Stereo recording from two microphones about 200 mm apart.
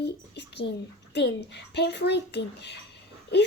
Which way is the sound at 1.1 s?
60° left (ahead or behind).